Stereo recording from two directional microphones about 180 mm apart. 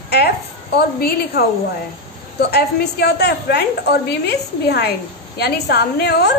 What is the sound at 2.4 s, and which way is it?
A woman's voice, 65° left (ahead or behind).